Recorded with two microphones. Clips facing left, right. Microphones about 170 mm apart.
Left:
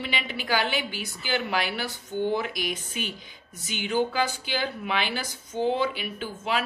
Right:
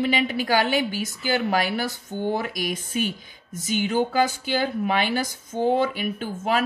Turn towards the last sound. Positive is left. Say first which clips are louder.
# right 5 dB
turn(degrees=-45)  # may be behind; listen again after turning